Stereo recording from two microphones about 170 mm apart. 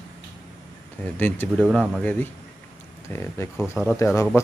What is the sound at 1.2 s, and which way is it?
Speech, 10° left (ahead or behind).